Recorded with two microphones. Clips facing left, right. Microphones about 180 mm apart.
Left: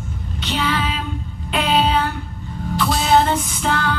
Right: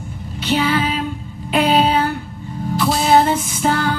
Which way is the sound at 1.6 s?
45° right (ahead or behind).